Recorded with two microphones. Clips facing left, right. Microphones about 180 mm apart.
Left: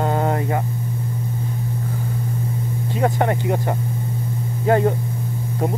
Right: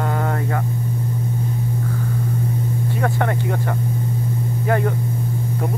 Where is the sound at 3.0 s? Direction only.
20° left (ahead or behind).